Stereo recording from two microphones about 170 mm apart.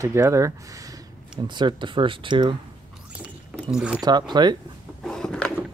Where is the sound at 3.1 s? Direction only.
5° right (ahead or behind).